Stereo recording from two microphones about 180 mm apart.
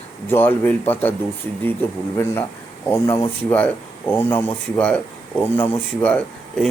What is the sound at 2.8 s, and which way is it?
Speech, 15° left (ahead or behind).